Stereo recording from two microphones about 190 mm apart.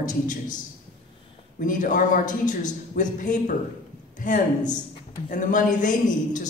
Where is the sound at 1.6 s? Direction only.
45° left (ahead or behind).